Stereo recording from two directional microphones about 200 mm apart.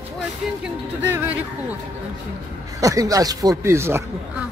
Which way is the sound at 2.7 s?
15° right (ahead or behind).